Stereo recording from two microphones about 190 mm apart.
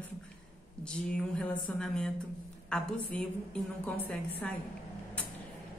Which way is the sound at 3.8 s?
5° left (ahead or behind).